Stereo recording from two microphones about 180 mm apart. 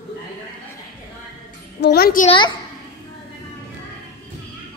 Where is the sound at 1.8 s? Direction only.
60° left (ahead or behind).